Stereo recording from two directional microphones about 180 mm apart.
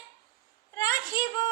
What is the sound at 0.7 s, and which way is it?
Child singing, 20° left (ahead or behind).